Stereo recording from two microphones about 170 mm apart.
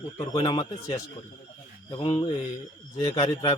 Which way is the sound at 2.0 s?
30° left (ahead or behind).